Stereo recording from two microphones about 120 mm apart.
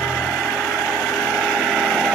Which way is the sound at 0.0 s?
5° left (ahead or behind).